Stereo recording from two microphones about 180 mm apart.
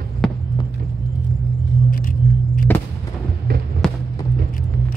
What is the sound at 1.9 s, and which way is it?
Car, 50° left (ahead or behind).